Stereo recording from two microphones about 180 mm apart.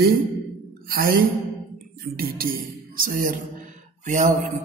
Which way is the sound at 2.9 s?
50° right (ahead or behind).